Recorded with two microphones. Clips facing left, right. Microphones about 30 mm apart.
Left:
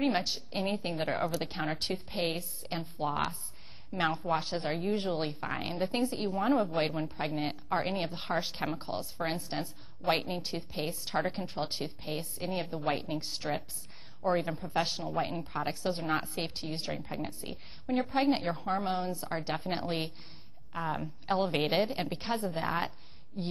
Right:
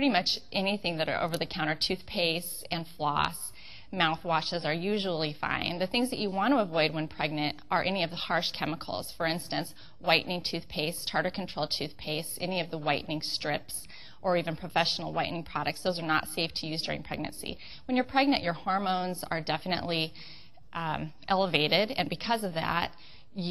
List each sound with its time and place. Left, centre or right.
0.0 s a woman's voice: right
3.9 s a woman's voice: right
12.6 s a woman's voice: right
13.2 s a woman's voice: right
14.4 s a woman's voice: right
18.7 s a woman's voice: right
19.3 s a woman's voice: right